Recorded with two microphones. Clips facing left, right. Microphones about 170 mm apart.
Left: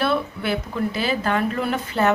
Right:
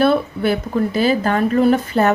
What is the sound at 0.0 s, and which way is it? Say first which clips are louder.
Speech: right 7 dB; 45° right (ahead or behind).